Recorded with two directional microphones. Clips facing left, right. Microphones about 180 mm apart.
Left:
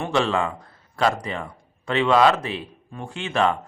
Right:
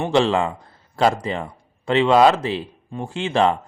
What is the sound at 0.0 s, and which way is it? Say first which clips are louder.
A man's voice: right 4 dB; 30° right (ahead or behind).